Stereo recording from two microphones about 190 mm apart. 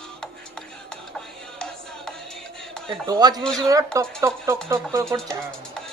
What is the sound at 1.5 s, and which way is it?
Music, 5° left (ahead or behind).